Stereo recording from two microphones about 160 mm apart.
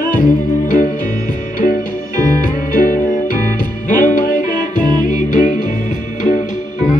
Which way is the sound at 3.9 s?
55° left (ahead or behind).